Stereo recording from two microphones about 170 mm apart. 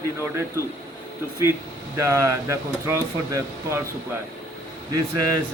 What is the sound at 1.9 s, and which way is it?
Speech, 15° right (ahead or behind).